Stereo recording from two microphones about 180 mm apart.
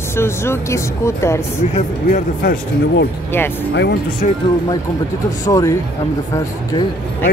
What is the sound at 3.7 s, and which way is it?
Speech, 70° left (ahead or behind).